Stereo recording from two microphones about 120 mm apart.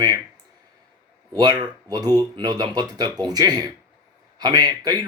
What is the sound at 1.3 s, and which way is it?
Speech, 35° right (ahead or behind).